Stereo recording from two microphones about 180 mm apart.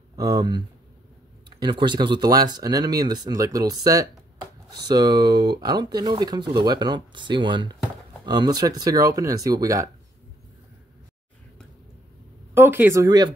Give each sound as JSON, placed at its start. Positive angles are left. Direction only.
{"t": 0.1, "sound": "speech", "side_deg": -20}
{"t": 12.5, "sound": "speech", "side_deg": -10}